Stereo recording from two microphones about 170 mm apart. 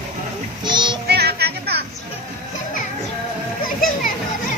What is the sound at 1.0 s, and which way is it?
Music, 70° right (ahead or behind).